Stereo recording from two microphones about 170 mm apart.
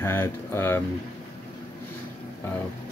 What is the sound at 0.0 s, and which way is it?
Speech, 15° left (ahead or behind).